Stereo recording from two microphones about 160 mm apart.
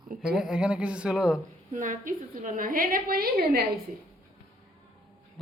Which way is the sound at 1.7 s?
55° right (ahead or behind).